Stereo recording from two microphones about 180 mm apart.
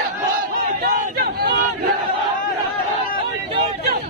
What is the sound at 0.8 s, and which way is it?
Chatter, 60° right (ahead or behind).